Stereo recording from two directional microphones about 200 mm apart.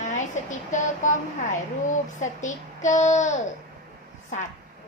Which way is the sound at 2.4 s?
40° left (ahead or behind).